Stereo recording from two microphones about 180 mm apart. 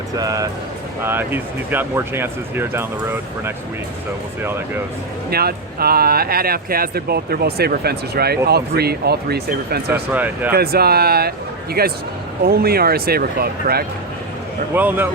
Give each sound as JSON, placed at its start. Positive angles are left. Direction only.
{"t": 0.2, "sound": "speech", "side_deg": -20}
{"t": 5.3, "sound": "speech", "side_deg": -60}
{"t": 9.9, "sound": "speech", "side_deg": -10}
{"t": 10.5, "sound": "speech", "side_deg": -60}
{"t": 14.7, "sound": "speech", "side_deg": -10}